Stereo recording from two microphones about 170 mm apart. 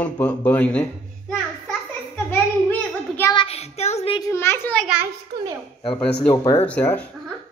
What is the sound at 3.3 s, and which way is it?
Child singing, 35° left (ahead or behind).